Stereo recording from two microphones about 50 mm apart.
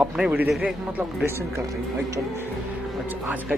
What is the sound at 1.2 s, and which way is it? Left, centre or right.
Speech, right.